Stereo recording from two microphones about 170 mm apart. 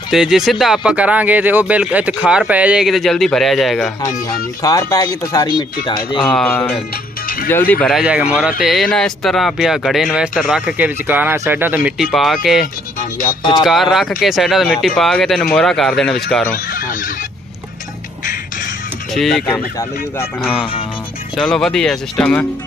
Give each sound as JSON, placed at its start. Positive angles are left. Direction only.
{"t": 0.1, "sound": "speech", "side_deg": 0}
{"t": 4.6, "sound": "speech", "side_deg": 20}
{"t": 6.3, "sound": "speech", "side_deg": 10}
{"t": 8.0, "sound": "speech", "side_deg": -5}
{"t": 10.8, "sound": "speech", "side_deg": -10}
{"t": 12.0, "sound": "speech", "side_deg": 0}
{"t": 13.4, "sound": "speech", "side_deg": 25}
{"t": 13.7, "sound": "speech", "side_deg": 0}
{"t": 16.5, "sound": "fowl", "side_deg": 55}
{"t": 19.1, "sound": "speech", "side_deg": 0}
{"t": 19.5, "sound": "speech", "side_deg": 15}
{"t": 21.4, "sound": "speech", "side_deg": 5}